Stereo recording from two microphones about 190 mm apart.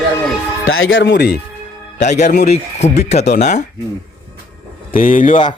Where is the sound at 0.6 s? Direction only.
90° left; by 1.4 s 60° left (ahead or behind).